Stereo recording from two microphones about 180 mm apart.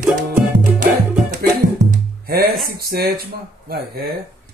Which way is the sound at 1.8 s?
60° right (ahead or behind).